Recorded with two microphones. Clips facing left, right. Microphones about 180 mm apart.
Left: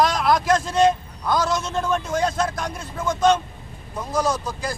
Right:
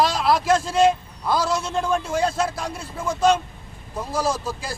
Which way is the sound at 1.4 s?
30° right (ahead or behind).